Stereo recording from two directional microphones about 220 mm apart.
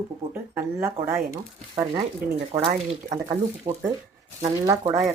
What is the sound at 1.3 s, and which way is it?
Speech, 15° right (ahead or behind).